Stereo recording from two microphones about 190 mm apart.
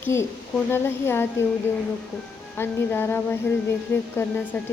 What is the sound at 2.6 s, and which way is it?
Speech, 10° left (ahead or behind).